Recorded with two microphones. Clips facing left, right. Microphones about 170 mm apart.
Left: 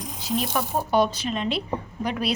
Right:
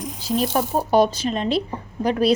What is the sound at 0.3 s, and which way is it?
A woman's voice, 40° right (ahead or behind).